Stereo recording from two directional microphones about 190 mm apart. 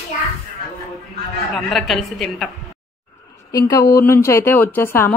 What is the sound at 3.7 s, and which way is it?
Speech, 15° left (ahead or behind).